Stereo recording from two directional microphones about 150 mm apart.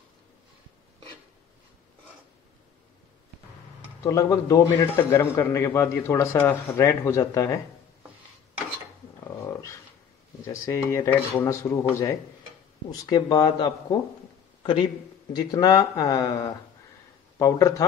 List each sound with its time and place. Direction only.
4.0 s a man's voice: 20° left (ahead or behind)
9.5 s dog: 20° left (ahead or behind)
10.4 s a man's voice: 20° left (ahead or behind)
14.6 s a man's voice: 35° left (ahead or behind)
15.3 s a man's voice: 25° left (ahead or behind)